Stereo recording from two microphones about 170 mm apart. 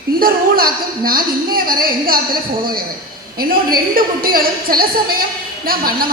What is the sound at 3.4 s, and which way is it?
A woman's voice, 60° right (ahead or behind).